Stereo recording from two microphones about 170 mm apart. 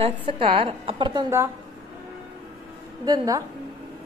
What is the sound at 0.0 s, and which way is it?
A woman's voice, 30° right (ahead or behind).